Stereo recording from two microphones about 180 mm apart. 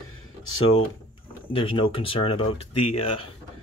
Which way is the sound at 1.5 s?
30° left (ahead or behind).